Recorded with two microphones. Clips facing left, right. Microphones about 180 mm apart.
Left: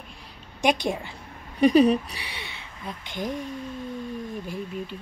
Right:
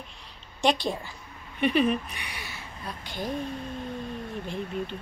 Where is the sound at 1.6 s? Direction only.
40° left (ahead or behind); by 3.4 s 15° left (ahead or behind).